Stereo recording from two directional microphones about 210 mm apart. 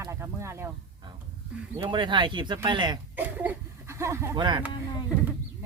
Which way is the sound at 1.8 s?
20° right (ahead or behind).